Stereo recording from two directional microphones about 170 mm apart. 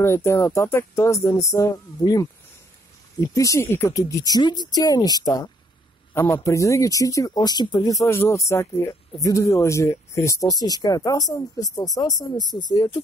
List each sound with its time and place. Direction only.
0.0 s speech: 15° left (ahead or behind)
3.3 s speech: 15° left (ahead or behind)